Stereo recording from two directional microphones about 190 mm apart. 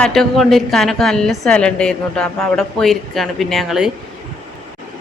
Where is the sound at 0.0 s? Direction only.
Centre (ahead or behind).